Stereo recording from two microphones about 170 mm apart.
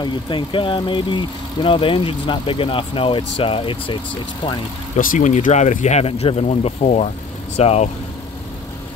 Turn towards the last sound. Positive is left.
turn(degrees=40)  # may be behind; listen again after turning